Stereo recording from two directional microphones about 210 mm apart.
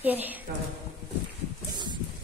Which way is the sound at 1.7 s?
20° right (ahead or behind).